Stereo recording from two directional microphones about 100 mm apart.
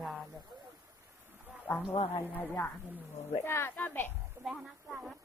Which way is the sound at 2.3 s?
20° left (ahead or behind).